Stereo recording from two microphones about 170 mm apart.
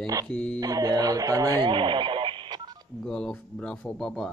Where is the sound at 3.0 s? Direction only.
5° left (ahead or behind).